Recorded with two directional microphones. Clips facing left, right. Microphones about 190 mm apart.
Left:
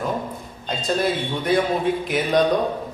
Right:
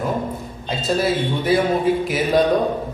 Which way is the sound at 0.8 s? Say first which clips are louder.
Right 3 dB; 5° right (ahead or behind).